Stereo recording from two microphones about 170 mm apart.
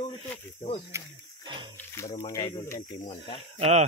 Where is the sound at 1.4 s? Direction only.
25° right (ahead or behind).